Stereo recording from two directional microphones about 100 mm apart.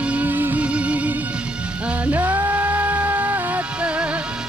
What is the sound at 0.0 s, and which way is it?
Music, 15° right (ahead or behind).